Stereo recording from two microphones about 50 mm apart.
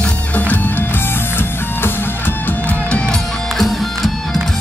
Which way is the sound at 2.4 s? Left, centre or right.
Left.